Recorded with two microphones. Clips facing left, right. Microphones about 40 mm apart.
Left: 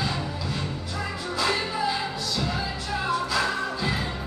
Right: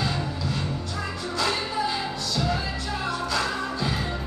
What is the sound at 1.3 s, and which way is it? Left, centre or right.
Music, centre.